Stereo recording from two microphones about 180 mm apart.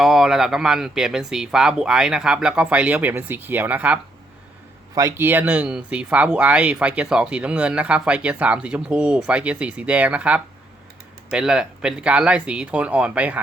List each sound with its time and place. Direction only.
0.0 s speech: centre (ahead or behind)